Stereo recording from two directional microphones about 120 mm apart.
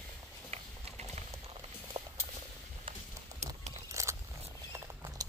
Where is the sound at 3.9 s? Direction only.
25° right (ahead or behind).